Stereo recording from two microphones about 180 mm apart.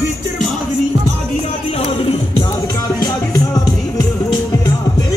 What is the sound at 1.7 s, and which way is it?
Music, 35° left (ahead or behind).